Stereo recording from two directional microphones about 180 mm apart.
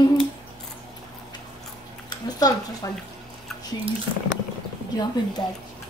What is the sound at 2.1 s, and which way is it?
Speech, 20° left (ahead or behind).